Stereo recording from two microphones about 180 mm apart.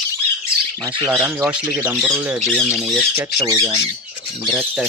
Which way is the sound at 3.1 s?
15° right (ahead or behind).